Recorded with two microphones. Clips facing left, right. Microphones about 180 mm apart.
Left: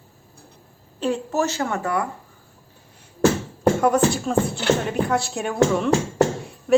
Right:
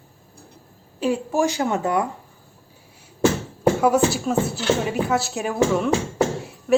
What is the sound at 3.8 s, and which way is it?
A woman's voice, 5° right (ahead or behind).